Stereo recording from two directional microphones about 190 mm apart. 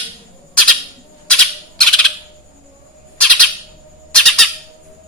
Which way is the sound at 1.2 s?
5° left (ahead or behind).